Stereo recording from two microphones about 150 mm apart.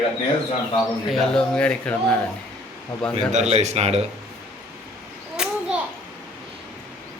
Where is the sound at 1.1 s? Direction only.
5° left (ahead or behind).